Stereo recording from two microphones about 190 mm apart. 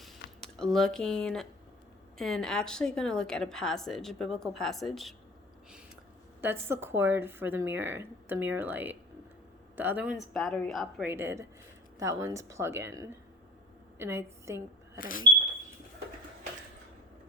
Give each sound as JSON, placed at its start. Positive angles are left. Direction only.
{"t": 0.0, "sound": "squish", "side_deg": 0}
{"t": 2.1, "sound": "a woman's voice", "side_deg": 5}
{"t": 6.4, "sound": "a woman's voice", "side_deg": -10}
{"t": 11.1, "sound": "a woman's voice", "side_deg": -15}
{"t": 14.9, "sound": "smoke detector", "side_deg": 45}